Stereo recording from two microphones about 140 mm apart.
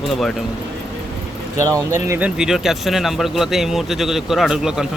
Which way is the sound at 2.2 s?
5° right (ahead or behind).